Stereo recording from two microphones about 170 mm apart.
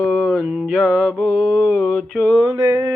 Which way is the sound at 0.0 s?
5° left (ahead or behind).